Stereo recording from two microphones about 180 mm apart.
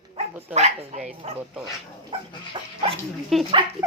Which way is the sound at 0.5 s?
40° right (ahead or behind).